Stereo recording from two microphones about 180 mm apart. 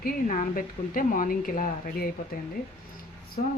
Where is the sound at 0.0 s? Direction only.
45° left (ahead or behind).